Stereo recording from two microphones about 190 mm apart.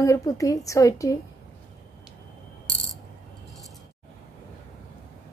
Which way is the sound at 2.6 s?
Centre (ahead or behind).